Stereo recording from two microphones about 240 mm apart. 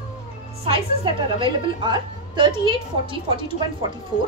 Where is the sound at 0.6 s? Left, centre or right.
Right.